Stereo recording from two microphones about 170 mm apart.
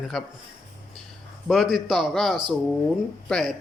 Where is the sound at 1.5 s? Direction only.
Centre (ahead or behind).